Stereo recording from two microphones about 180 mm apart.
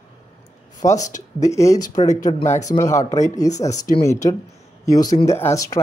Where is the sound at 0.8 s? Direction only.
20° left (ahead or behind).